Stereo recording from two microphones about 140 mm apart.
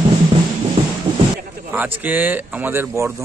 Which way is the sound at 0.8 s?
40° right (ahead or behind).